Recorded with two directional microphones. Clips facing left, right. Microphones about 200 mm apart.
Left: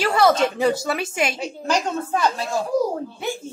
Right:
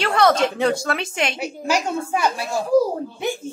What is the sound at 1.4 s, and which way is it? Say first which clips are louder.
A woman's voice: right 1 dB; 10° right (ahead or behind).